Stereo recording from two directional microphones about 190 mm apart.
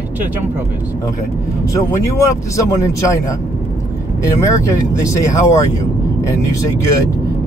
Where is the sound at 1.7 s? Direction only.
15° left (ahead or behind).